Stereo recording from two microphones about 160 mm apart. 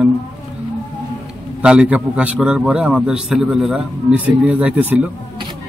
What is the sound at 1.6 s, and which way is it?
A man's voice, 5° right (ahead or behind).